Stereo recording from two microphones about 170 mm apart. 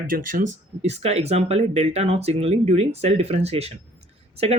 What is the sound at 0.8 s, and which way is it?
Speech, 40° right (ahead or behind).